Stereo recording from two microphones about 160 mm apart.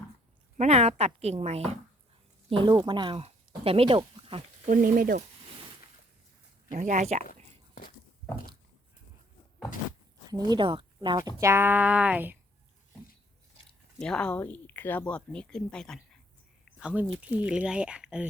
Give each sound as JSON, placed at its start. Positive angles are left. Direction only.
{"t": 0.5, "sound": "a woman's voice", "side_deg": -45}
{"t": 4.7, "sound": "speech", "side_deg": -60}
{"t": 6.7, "sound": "speech", "side_deg": -50}
{"t": 10.2, "sound": "speech", "side_deg": -25}
{"t": 14.0, "sound": "speech", "side_deg": 5}
{"t": 16.8, "sound": "speech", "side_deg": -5}